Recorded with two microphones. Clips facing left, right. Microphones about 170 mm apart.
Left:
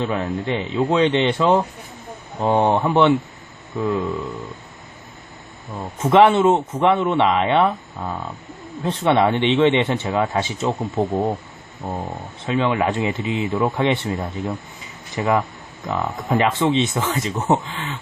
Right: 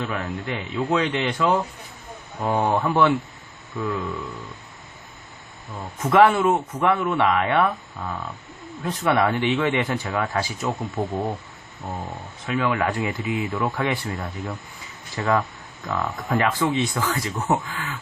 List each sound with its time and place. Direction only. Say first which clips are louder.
0.0 s speech: left 5 dB; 25° left (ahead or behind)
6.0 s speech: left 3 dB; 25° left (ahead or behind)
12.5 s speech: left 3 dB; 25° left (ahead or behind)
15.1 s speech: left 3 dB; 20° left (ahead or behind)